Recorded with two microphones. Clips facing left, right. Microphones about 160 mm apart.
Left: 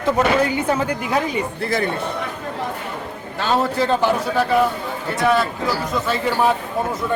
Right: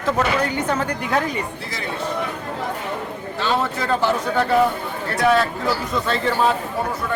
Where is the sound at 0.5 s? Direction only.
10° left (ahead or behind).